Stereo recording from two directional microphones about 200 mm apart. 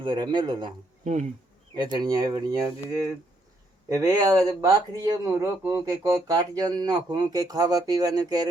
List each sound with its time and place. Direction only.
0.0 s speech: 25° right (ahead or behind)
1.0 s bee: 35° right (ahead or behind)
1.7 s speech: 20° right (ahead or behind)